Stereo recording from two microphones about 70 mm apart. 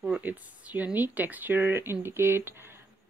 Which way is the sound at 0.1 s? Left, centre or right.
Right.